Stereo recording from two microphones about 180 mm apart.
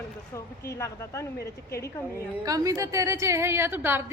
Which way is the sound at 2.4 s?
20° right (ahead or behind).